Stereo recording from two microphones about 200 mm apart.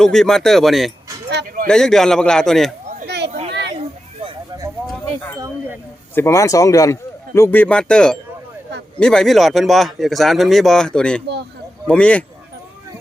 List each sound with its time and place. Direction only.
0.0 s speech: centre (ahead or behind)
1.3 s speech: 55° right (ahead or behind)
1.6 s speech: 5° left (ahead or behind)
2.8 s a sound: 40° right (ahead or behind)
6.1 s a man's voice: 15° left (ahead or behind)